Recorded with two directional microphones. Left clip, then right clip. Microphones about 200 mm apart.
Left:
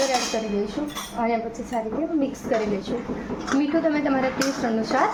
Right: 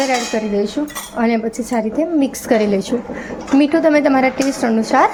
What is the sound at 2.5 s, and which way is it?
Speech, 45° right (ahead or behind).